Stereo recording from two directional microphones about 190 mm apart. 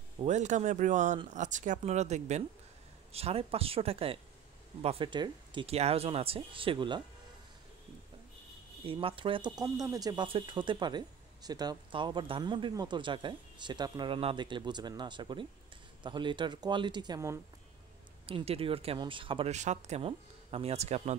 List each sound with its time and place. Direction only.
0.2 s speech: 40° right (ahead or behind)
8.8 s speech: 30° right (ahead or behind)
18.2 s speech: 30° right (ahead or behind)